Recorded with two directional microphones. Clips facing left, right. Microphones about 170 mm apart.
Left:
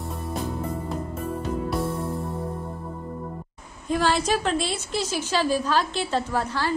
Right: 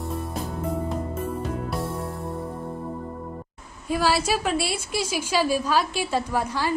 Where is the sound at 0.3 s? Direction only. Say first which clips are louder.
Even; centre (ahead or behind).